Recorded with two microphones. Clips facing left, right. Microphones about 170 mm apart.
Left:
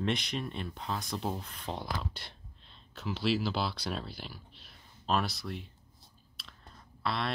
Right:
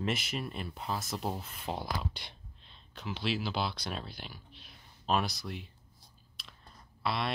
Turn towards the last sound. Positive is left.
turn(degrees=-5)  # may be behind; listen again after turning